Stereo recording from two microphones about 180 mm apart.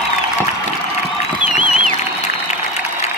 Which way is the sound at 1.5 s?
45° right (ahead or behind).